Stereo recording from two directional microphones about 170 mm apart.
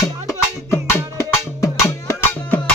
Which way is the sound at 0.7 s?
15° left (ahead or behind).